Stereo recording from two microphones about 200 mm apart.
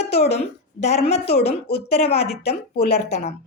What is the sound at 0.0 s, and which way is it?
A woman's voice, 30° left (ahead or behind).